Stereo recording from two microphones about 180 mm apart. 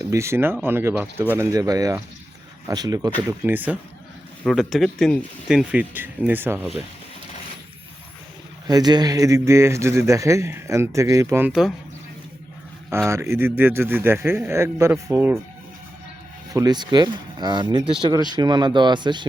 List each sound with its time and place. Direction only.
0.0 s speech: 15° right (ahead or behind)
3.2 s speech: 10° right (ahead or behind)
8.6 s speech: 25° right (ahead or behind); by 11.7 s 5° right (ahead or behind)
13.1 s speech: 15° right (ahead or behind)
16.5 s speech: 20° right (ahead or behind)